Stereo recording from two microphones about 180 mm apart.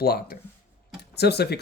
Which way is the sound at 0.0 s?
60° left (ahead or behind).